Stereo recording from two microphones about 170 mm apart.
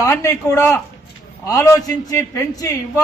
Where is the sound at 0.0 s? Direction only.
15° left (ahead or behind).